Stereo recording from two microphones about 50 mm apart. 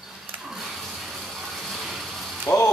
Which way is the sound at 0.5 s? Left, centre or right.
Centre.